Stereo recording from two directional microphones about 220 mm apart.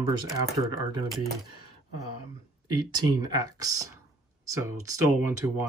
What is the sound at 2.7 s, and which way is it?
Speech, 15° right (ahead or behind).